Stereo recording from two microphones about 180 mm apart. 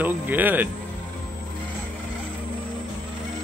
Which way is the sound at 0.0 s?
10° right (ahead or behind).